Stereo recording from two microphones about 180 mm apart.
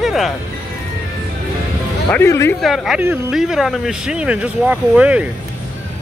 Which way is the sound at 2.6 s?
Centre (ahead or behind).